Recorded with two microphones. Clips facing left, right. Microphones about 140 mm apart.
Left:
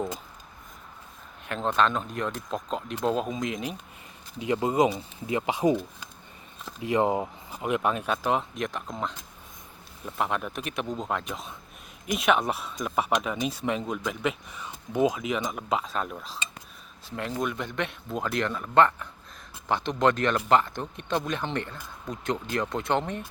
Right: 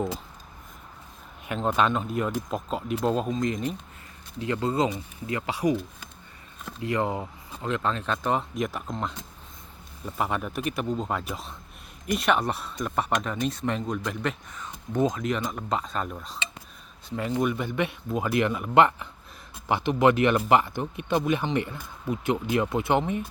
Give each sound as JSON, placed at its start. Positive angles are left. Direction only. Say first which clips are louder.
{"t": 1.5, "sound": "speech", "louder": "right 1 dB", "side_deg": -10}
{"t": 4.4, "sound": "speech", "louder": "left 2 dB", "side_deg": 15}
{"t": 6.8, "sound": "speech", "louder": "left 3 dB", "side_deg": 20}